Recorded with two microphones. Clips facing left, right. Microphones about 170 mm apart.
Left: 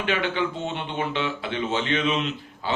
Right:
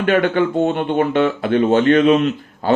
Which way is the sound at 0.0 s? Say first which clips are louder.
Right 10 dB; 50° right (ahead or behind).